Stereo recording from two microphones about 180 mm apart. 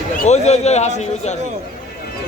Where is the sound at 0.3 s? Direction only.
35° left (ahead or behind).